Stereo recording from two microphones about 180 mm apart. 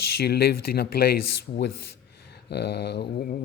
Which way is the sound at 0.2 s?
60° left (ahead or behind).